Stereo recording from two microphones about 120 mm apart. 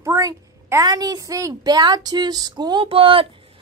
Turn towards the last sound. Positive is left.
turn(degrees=-50)  # may be behind; listen again after turning